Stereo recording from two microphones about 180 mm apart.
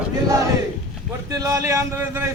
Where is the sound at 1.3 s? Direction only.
20° right (ahead or behind).